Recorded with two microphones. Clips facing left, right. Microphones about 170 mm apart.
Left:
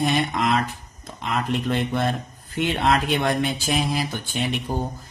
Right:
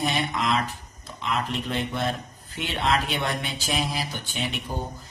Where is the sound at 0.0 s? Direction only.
50° left (ahead or behind).